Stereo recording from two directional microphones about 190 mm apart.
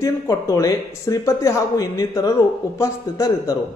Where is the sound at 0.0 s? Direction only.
15° left (ahead or behind).